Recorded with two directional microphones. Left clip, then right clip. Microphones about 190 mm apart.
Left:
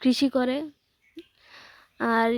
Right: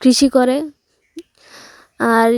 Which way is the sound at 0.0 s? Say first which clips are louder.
Right 11 dB; 50° right (ahead or behind).